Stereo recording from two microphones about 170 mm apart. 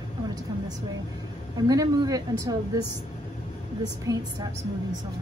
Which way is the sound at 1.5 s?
20° right (ahead or behind).